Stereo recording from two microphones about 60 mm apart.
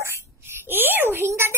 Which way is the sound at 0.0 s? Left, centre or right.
Right.